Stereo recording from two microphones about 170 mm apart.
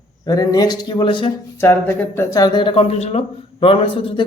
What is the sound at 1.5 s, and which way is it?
Speech, 15° left (ahead or behind).